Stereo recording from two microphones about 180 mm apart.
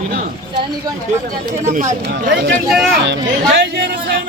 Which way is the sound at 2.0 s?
70° right (ahead or behind).